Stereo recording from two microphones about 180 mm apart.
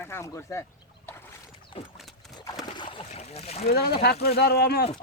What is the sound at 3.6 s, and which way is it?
Speech, 60° left (ahead or behind).